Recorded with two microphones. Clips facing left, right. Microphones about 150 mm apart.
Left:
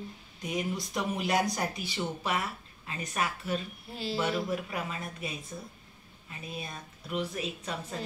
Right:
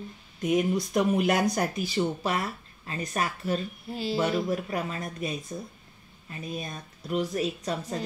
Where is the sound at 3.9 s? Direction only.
Centre (ahead or behind).